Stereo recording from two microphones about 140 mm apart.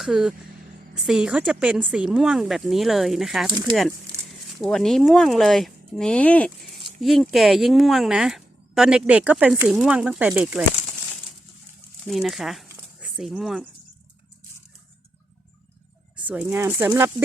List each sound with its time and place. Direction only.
0.0 s speech: 5° right (ahead or behind)
3.5 s speech: 30° right (ahead or behind)
4.6 s speech: centre (ahead or behind)
12.0 s speech: centre (ahead or behind)
12.7 s a sound: 5° right (ahead or behind)
16.2 s speech: 10° right (ahead or behind)